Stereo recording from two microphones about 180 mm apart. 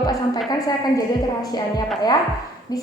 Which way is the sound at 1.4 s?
25° left (ahead or behind).